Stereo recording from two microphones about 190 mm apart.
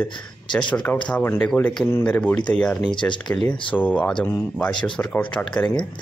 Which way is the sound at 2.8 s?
25° left (ahead or behind).